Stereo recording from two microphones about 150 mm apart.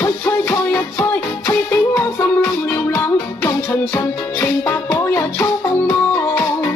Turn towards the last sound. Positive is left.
turn(degrees=15)  # may be behind; listen again after turning